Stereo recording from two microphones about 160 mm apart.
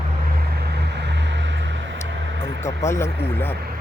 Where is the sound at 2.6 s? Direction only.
15° left (ahead or behind).